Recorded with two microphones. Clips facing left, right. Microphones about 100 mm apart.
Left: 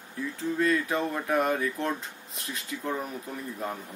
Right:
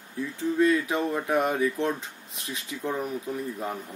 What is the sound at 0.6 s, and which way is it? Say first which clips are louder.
Speech: right 3 dB; 5° right (ahead or behind).